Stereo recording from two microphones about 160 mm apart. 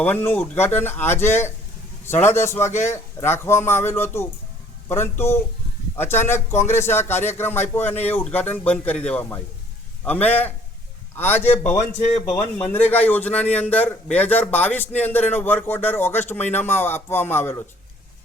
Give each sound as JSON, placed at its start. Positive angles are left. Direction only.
{"t": 0.0, "sound": "a man's voice", "side_deg": 10}